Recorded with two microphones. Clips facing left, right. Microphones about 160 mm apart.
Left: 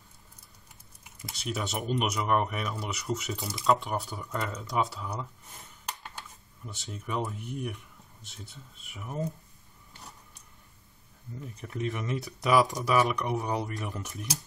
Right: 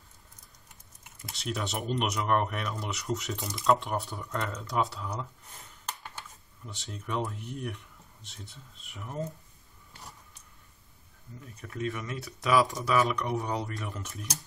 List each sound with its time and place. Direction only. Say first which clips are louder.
1.3 s speech: even; centre (ahead or behind)
6.6 s speech: left 1 dB; 5° left (ahead or behind)
11.6 s speech: left 1 dB; 20° left (ahead or behind)